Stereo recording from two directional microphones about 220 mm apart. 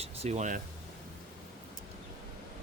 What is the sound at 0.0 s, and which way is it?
Speech, 30° right (ahead or behind).